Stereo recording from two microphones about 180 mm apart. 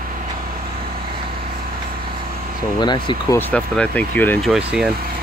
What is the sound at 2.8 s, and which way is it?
Speech, 25° left (ahead or behind).